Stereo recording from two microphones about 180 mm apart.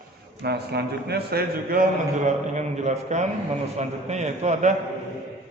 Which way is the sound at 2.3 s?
40° right (ahead or behind).